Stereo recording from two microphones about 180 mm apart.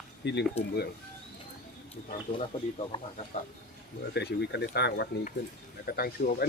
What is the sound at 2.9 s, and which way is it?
Speech, 25° left (ahead or behind).